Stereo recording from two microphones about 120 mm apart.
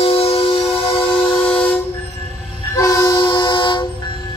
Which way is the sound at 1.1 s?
10° left (ahead or behind).